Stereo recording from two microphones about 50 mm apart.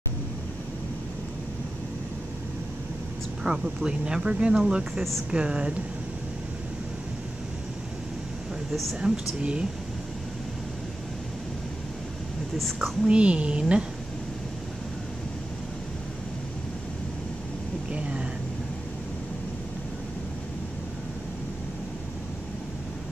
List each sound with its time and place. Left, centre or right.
3.4 s a woman's voice: centre
9.0 s a woman's voice: right
12.5 s a woman's voice: centre
13.0 s a woman's voice: right
17.9 s a sound: right